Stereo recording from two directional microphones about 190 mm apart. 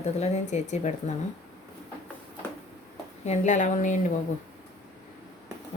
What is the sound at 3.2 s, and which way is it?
Speech, 40° left (ahead or behind).